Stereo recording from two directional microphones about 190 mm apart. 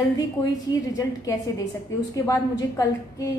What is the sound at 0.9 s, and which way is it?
A woman's voice, 15° left (ahead or behind).